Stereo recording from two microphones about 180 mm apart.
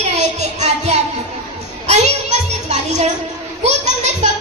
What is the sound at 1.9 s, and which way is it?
Music, 35° right (ahead or behind).